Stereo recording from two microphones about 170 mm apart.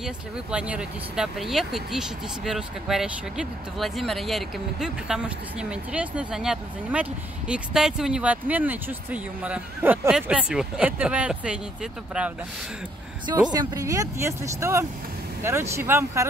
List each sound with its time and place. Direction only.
0.0 s speech: 5° right (ahead or behind)
13.3 s speech: 25° right (ahead or behind)